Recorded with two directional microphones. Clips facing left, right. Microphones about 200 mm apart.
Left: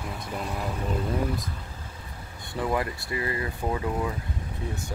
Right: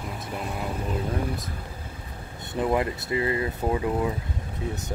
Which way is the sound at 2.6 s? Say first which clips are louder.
Right 3 dB; 20° right (ahead or behind).